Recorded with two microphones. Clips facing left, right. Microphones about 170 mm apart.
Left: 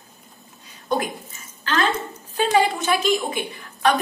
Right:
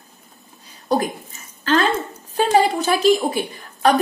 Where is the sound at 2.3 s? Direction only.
40° right (ahead or behind).